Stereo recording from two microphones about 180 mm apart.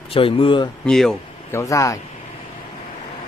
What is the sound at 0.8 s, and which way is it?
Speech, 5° left (ahead or behind).